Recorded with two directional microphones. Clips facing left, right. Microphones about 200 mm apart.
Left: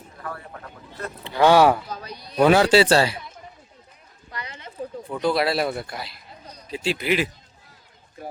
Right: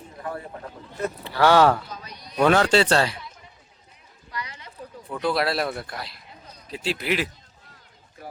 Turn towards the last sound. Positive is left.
turn(degrees=0)  # may be behind; listen again after turning